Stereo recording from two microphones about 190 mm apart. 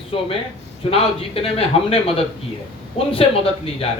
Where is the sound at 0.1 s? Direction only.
30° left (ahead or behind).